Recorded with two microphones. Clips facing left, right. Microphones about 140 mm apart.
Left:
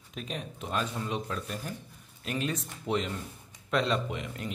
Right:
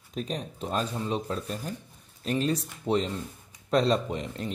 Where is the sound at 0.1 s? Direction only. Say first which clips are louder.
Right 5 dB; 35° right (ahead or behind).